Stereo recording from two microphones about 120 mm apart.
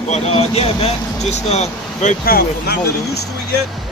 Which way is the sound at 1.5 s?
75° left (ahead or behind).